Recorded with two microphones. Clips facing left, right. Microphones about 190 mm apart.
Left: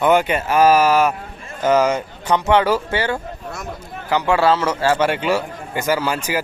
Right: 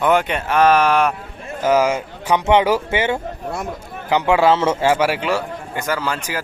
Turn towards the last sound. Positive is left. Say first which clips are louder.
# left 3 dB
turn(degrees=10)  # may be behind; listen again after turning